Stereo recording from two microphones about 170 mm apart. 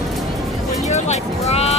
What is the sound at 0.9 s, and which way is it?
Speech, 40° left (ahead or behind).